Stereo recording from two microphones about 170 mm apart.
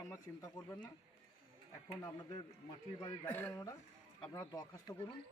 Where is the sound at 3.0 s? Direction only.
15° left (ahead or behind).